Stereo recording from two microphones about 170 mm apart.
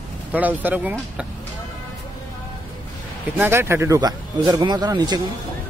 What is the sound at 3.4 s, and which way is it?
Speech, 15° right (ahead or behind).